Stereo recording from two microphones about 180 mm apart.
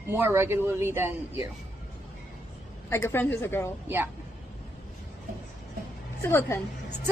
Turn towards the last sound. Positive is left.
turn(degrees=15)  # may be behind; listen again after turning